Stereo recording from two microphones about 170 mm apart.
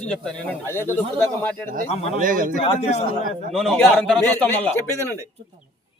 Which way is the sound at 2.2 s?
50° right (ahead or behind).